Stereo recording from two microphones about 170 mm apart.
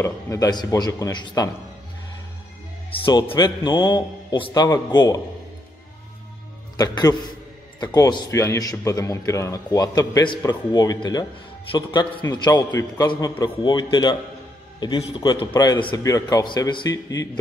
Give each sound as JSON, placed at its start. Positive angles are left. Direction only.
{"t": 0.0, "sound": "a man's voice", "side_deg": 20}
{"t": 2.9, "sound": "a man's voice", "side_deg": 30}
{"t": 6.8, "sound": "a man's voice", "side_deg": 20}